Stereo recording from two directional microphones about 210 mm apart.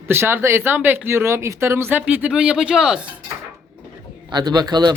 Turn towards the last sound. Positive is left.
turn(degrees=-20)  # may be behind; listen again after turning